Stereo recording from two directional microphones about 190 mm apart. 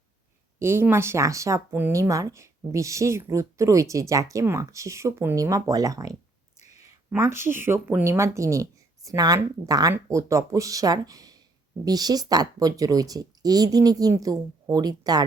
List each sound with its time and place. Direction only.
0.6 s speech: 15° right (ahead or behind)
6.6 s a sound: 35° left (ahead or behind)
7.1 s speech: 15° right (ahead or behind)